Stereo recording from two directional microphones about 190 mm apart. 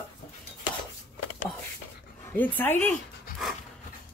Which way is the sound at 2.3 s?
10° left (ahead or behind).